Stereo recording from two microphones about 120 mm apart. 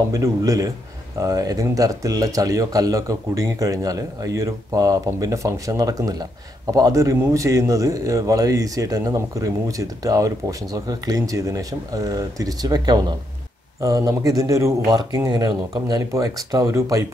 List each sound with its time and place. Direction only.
0.1 s speech: 30° right (ahead or behind)